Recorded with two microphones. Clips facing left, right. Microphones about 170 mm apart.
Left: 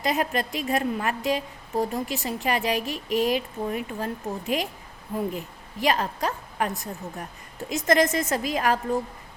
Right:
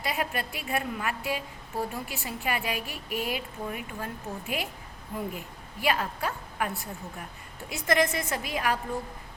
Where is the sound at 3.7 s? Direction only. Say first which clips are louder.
Left 8 dB; 35° left (ahead or behind).